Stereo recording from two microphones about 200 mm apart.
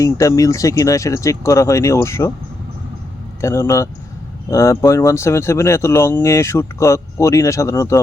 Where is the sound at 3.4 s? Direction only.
15° left (ahead or behind).